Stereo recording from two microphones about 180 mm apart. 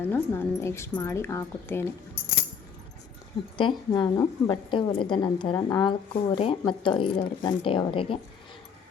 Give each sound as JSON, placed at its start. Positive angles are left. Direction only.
{"t": 0.0, "sound": "speech", "side_deg": 10}
{"t": 3.6, "sound": "a woman's voice", "side_deg": 25}